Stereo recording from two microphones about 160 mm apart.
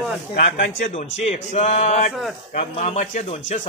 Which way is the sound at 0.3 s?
60° left (ahead or behind).